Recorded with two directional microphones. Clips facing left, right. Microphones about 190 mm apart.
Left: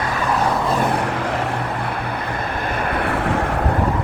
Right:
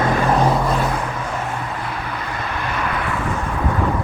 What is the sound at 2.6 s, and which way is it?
Vehicle, 50° left (ahead or behind).